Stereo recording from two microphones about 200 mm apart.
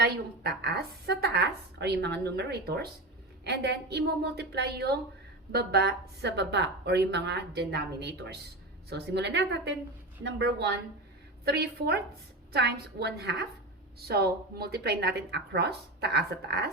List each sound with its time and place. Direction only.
0.0 s a woman's voice: 55° right (ahead or behind)